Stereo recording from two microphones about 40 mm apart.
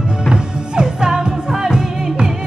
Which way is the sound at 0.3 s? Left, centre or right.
Right.